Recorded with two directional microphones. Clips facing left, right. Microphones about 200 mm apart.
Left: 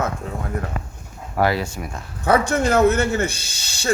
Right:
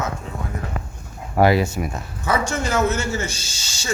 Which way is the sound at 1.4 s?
15° right (ahead or behind).